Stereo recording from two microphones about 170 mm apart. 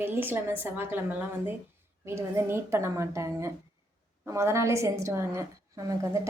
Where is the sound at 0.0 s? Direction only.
10° right (ahead or behind).